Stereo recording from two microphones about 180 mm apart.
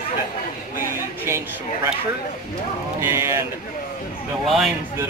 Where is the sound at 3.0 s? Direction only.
15° right (ahead or behind).